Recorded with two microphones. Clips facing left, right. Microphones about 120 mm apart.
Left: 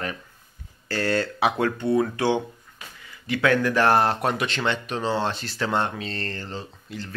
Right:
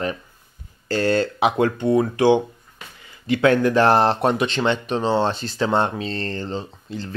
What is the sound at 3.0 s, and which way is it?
Speech, 30° right (ahead or behind).